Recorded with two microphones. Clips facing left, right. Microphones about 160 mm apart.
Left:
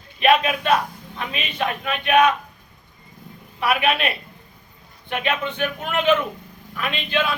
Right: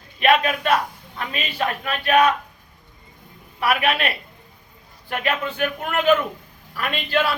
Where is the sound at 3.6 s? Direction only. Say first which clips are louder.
Even; centre (ahead or behind).